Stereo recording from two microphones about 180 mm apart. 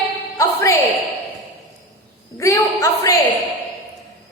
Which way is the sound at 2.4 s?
15° left (ahead or behind).